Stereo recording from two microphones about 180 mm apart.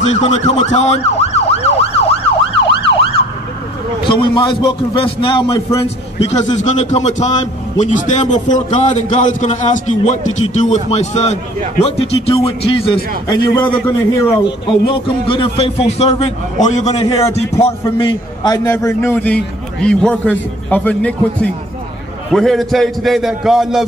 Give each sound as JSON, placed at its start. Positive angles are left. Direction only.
{"t": 0.0, "sound": "emergency vehicle", "side_deg": 40}
{"t": 4.1, "sound": "a man's voice", "side_deg": 25}
{"t": 13.6, "sound": "a man's voice", "side_deg": 10}
{"t": 14.7, "sound": "a man's voice", "side_deg": 25}